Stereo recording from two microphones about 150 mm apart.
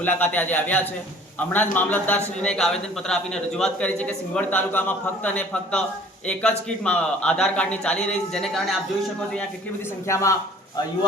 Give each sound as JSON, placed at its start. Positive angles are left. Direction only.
{"t": 0.0, "sound": "a man's voice", "side_deg": 10}
{"t": 10.1, "sound": "a man's voice", "side_deg": 20}